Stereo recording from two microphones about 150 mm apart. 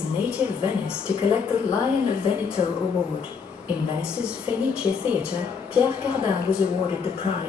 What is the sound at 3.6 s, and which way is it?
A woman's voice, 5° right (ahead or behind).